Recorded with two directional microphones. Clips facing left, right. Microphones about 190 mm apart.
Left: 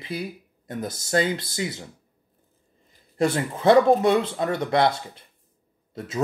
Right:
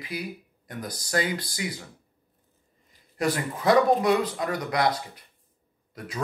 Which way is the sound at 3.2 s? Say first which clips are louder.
Left 4 dB; 25° left (ahead or behind).